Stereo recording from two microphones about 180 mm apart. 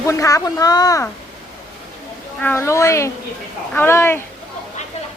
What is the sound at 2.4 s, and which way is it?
Speech, 15° left (ahead or behind).